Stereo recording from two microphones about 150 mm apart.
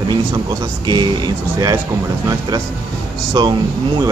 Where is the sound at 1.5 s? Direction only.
30° right (ahead or behind).